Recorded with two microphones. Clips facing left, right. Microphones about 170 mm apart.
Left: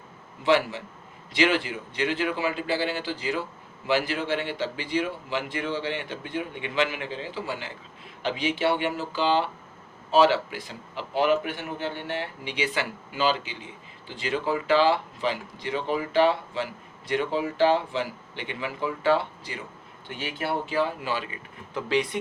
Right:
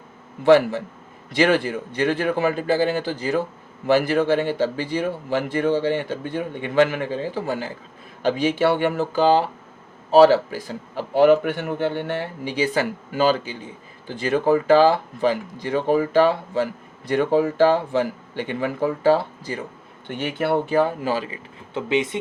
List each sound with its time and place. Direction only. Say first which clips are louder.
0.4 s speech: right 8 dB; 50° right (ahead or behind)
20.1 s speech: right 8 dB; 55° right (ahead or behind); by 22.2 s 25° right (ahead or behind)